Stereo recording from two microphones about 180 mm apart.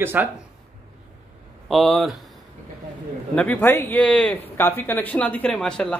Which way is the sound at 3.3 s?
5° left (ahead or behind).